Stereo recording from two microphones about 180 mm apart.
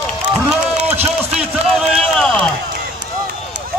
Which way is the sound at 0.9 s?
35° right (ahead or behind).